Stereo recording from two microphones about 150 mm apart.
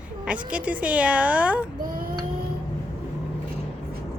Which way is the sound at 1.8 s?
70° right (ahead or behind).